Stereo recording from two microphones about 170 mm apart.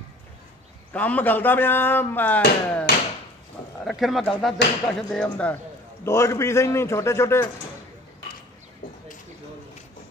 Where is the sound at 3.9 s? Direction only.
Centre (ahead or behind); by 7.5 s 15° left (ahead or behind).